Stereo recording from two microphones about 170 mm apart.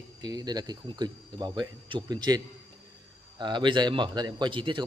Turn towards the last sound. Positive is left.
turn(degrees=-30)  # may be behind; listen again after turning